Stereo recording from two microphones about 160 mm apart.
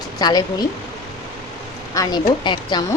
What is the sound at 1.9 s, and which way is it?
A woman's voice, 25° left (ahead or behind).